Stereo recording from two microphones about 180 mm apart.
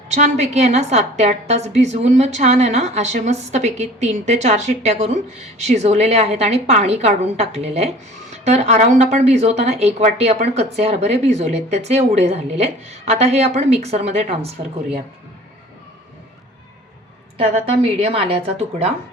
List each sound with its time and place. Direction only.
0.1 s a woman's voice: 40° right (ahead or behind)
17.3 s a woman's voice: 35° right (ahead or behind)